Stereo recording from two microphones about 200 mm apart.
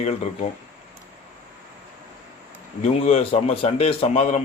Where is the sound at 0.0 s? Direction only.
35° left (ahead or behind).